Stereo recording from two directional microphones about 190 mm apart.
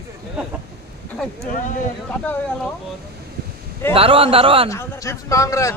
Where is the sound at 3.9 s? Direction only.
30° right (ahead or behind).